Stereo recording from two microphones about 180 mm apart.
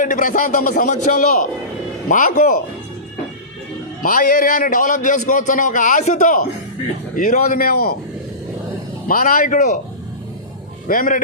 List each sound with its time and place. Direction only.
0.0 s a man's voice: 45° left (ahead or behind)
4.0 s a man's voice: 50° left (ahead or behind)
9.0 s a man's voice: 50° left (ahead or behind)
10.8 s a man's voice: 50° left (ahead or behind)